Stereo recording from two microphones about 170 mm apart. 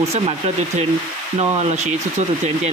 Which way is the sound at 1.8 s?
40° right (ahead or behind).